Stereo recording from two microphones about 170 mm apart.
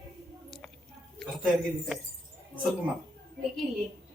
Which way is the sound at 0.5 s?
Centre (ahead or behind).